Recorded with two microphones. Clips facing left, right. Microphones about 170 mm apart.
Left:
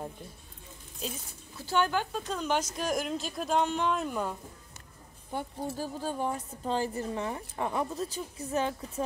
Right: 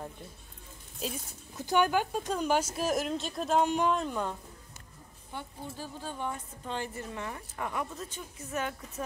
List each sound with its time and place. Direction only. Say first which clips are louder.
1.6 s speech: right 2 dB; 15° right (ahead or behind)
3.6 s speech: right 2 dB; 10° right (ahead or behind)
3.9 s speech: even; 5° left (ahead or behind)
5.3 s a woman's voice: left 7 dB; 45° left (ahead or behind)